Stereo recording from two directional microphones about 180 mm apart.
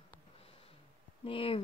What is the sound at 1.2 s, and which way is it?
Speech, 30° left (ahead or behind).